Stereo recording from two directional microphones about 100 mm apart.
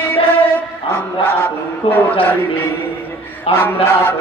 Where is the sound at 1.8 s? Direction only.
70° left (ahead or behind).